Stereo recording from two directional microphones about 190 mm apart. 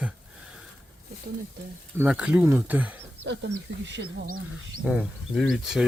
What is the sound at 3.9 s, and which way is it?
Speech, 70° right (ahead or behind).